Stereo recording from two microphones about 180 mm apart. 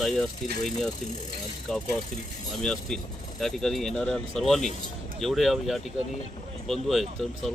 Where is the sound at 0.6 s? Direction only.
5° left (ahead or behind).